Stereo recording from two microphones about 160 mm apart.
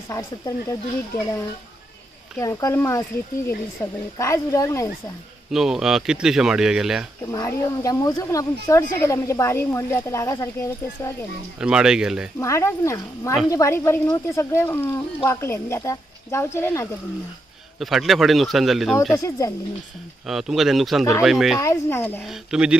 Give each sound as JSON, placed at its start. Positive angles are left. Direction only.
{"t": 2.3, "sound": "speech", "side_deg": 20}
{"t": 5.5, "sound": "speech", "side_deg": 0}
{"t": 7.2, "sound": "speech", "side_deg": 20}
{"t": 11.6, "sound": "speech", "side_deg": -5}
{"t": 12.4, "sound": "speech", "side_deg": 20}
{"t": 17.7, "sound": "speech", "side_deg": 0}
{"t": 19.1, "sound": "speech", "side_deg": 20}
{"t": 20.2, "sound": "speech", "side_deg": 0}
{"t": 21.5, "sound": "speech", "side_deg": 15}
{"t": 22.2, "sound": "speech", "side_deg": -5}